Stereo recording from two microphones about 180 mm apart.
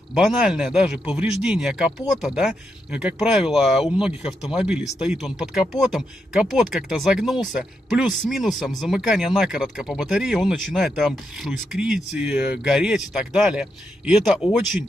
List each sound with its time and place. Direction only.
0.1 s speech: centre (ahead or behind)